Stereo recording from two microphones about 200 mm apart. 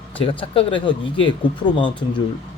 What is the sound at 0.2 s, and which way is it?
Speech, 25° left (ahead or behind).